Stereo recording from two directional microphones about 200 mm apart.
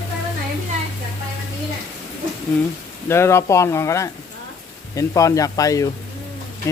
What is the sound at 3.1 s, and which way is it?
Speech, 15° left (ahead or behind).